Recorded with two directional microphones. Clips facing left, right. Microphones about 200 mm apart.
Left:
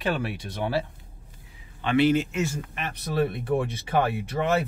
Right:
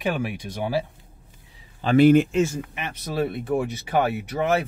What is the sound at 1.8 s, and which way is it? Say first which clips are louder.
Speech: right 6 dB; 45° right (ahead or behind).